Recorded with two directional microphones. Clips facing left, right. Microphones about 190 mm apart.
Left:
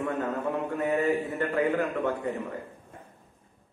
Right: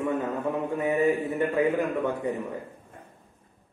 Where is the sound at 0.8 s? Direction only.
15° right (ahead or behind).